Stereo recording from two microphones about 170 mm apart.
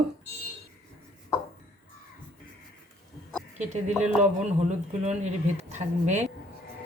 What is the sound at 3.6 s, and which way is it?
Speech, 45° right (ahead or behind).